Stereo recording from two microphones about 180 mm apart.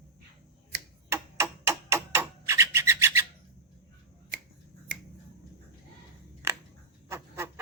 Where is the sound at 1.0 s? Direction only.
15° right (ahead or behind).